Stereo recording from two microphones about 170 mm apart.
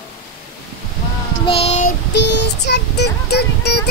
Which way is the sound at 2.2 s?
90° left.